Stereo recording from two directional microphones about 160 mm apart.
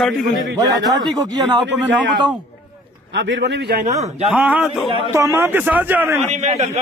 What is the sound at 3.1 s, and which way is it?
Speech, 90° right.